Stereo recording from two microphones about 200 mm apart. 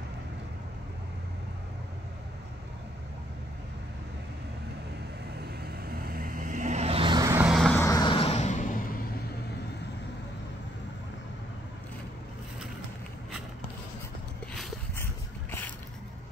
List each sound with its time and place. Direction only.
5.6 s vehicle: 50° right (ahead or behind); by 7.4 s 15° right (ahead or behind)
7.4 s vehicle: centre (ahead or behind)
7.8 s vehicle: 20° left (ahead or behind); by 8.8 s 40° left (ahead or behind)